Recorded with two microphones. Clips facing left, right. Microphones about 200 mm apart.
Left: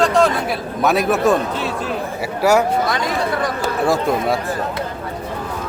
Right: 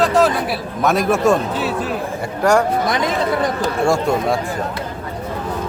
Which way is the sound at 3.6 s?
Centre (ahead or behind).